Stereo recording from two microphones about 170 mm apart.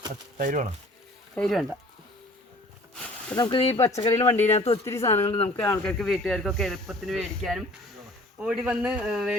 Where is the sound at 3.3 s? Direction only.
30° left (ahead or behind).